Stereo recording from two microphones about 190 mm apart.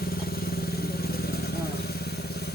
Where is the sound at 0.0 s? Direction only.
50° left (ahead or behind).